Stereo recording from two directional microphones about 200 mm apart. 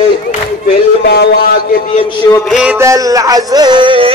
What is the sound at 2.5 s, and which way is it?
Music, 5° right (ahead or behind).